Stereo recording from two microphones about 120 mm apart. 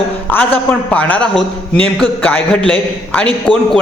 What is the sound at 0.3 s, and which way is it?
A man's voice, 15° left (ahead or behind).